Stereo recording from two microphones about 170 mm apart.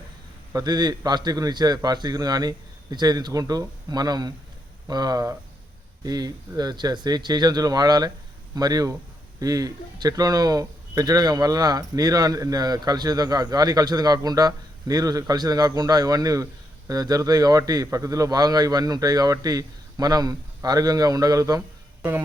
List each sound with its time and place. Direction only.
0.5 s speech: 25° right (ahead or behind)